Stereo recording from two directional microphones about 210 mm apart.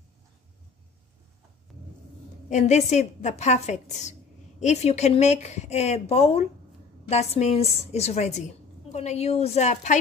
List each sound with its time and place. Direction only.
1.7 s vehicle: centre (ahead or behind)
2.5 s speech: 35° left (ahead or behind)